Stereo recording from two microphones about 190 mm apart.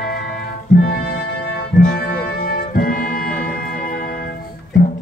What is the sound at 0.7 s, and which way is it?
Music, 55° left (ahead or behind).